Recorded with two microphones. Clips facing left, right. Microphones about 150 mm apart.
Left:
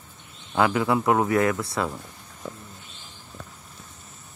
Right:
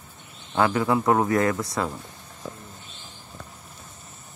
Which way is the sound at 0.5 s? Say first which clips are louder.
Even; 10° left (ahead or behind).